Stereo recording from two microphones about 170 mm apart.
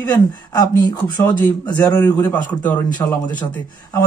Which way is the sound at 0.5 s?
25° left (ahead or behind).